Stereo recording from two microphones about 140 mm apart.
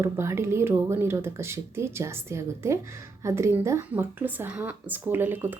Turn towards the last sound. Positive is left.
turn(degrees=-15)  # may be behind; listen again after turning